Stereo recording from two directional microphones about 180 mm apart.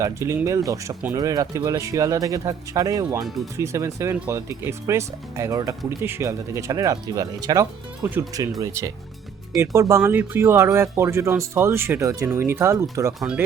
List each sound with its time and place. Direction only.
0.0 s speech: 15° right (ahead or behind)
3.2 s speech: centre (ahead or behind)
3.6 s speech: 15° right (ahead or behind)
13.1 s speech: 5° right (ahead or behind)